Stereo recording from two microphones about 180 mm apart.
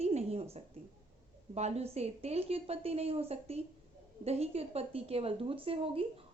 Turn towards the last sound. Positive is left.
turn(degrees=-30)  # may be behind; listen again after turning